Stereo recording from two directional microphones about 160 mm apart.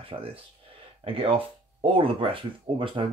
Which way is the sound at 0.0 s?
35° right (ahead or behind).